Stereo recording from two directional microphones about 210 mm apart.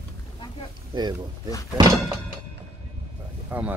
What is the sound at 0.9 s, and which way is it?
Speech, 25° right (ahead or behind).